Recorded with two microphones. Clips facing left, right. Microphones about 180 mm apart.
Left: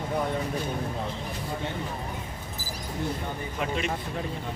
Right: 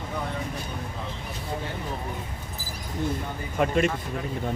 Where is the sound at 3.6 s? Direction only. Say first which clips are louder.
Right 8 dB; 50° right (ahead or behind).